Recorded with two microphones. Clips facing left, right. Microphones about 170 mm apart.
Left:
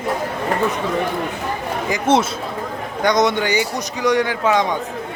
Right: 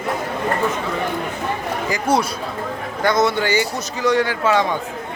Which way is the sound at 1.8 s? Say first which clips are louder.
Left 3 dB; 20° left (ahead or behind).